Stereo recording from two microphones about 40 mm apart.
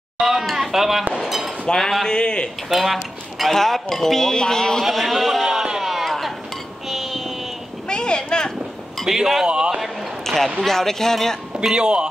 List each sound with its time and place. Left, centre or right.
0.2 s speech: centre
1.7 s speech: centre
2.0 s speech: left
2.7 s speech: centre
4.8 s a sound: centre
6.9 s child singing: centre
7.9 s a sound: left
9.0 s speech: centre
9.5 s a man's voice: right
9.8 s a sound: centre
10.6 s speech: centre
11.6 s speech: right